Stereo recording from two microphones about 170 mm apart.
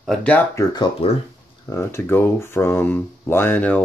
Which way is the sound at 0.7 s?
25° left (ahead or behind).